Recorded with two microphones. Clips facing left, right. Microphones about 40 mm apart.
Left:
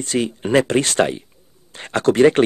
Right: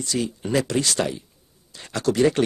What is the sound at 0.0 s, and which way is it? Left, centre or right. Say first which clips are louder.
Speech: left 5 dB; left.